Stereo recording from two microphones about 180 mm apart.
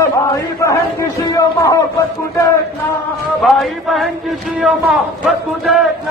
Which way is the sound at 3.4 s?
Centre (ahead or behind).